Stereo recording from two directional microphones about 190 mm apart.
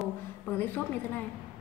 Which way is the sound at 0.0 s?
10° left (ahead or behind).